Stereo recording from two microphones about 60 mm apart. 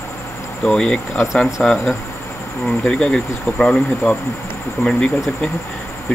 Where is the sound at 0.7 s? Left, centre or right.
Centre.